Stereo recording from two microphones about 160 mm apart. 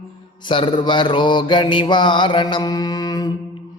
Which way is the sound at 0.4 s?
30° left (ahead or behind).